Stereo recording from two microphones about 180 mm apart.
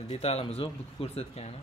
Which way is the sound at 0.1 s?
35° left (ahead or behind).